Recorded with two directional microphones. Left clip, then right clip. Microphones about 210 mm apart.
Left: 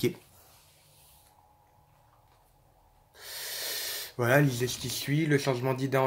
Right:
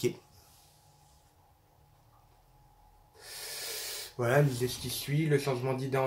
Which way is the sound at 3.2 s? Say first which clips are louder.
Left 4 dB; 45° left (ahead or behind).